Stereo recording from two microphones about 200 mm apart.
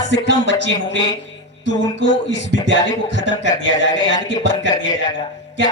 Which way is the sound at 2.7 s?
60° left (ahead or behind).